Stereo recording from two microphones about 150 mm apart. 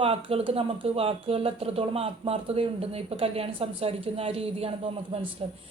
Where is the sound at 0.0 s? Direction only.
40° right (ahead or behind).